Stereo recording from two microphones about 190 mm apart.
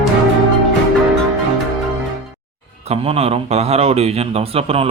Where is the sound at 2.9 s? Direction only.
30° right (ahead or behind).